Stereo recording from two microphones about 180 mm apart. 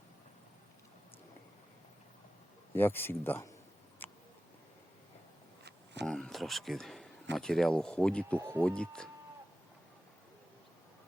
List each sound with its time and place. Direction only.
2.7 s speech: 10° left (ahead or behind)
4.0 s mouse: 10° left (ahead or behind)
5.6 s a sound: 70° right (ahead or behind)
6.1 s a man's voice: 5° left (ahead or behind)
8.4 s speech: 15° right (ahead or behind)
8.6 s a man's voice: 5° left (ahead or behind)